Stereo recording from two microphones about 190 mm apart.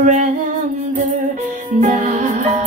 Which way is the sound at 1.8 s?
35° right (ahead or behind).